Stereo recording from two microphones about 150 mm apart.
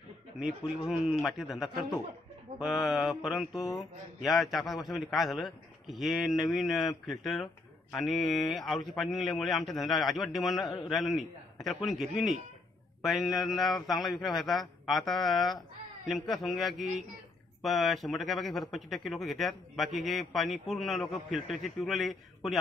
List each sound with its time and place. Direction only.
0.4 s speech: centre (ahead or behind)
10.6 s a man's voice: 25° left (ahead or behind)
10.9 s speech: centre (ahead or behind)